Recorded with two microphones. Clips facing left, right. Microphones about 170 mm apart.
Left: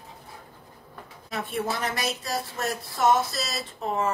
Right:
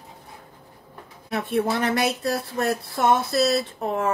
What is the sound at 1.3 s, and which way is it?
Speech, 60° right (ahead or behind).